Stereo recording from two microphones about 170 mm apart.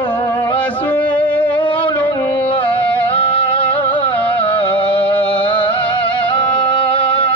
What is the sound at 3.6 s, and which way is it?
Music, 10° left (ahead or behind).